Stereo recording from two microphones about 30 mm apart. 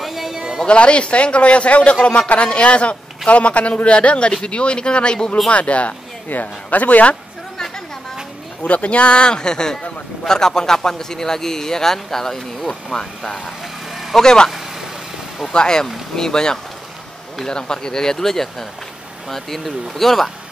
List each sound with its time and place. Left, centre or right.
0.0 s a sound: centre
0.7 s a man's voice: left
5.5 s speech: left
6.2 s speech: left
8.6 s a man's voice: left; by 12.7 s centre
14.2 s speech: left
15.5 s a man's voice: left; by 20.2 s centre